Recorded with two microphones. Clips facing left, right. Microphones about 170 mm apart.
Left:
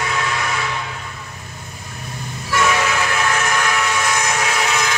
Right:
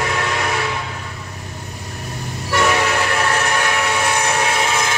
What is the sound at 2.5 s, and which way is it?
Train, 35° right (ahead or behind).